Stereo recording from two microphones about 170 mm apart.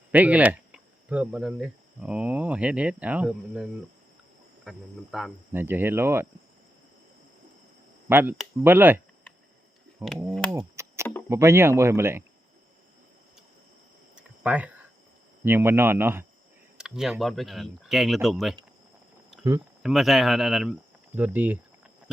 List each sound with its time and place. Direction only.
0.1 s speech: 10° right (ahead or behind)
5.5 s speech: 10° right (ahead or behind)
8.1 s speech: 10° right (ahead or behind)
10.5 s a sound: 15° right (ahead or behind)
11.3 s speech: 15° right (ahead or behind)
14.2 s cricket: 10° right (ahead or behind)
15.4 s speech: 15° right (ahead or behind)
19.3 s insect: centre (ahead or behind)
19.8 s speech: centre (ahead or behind)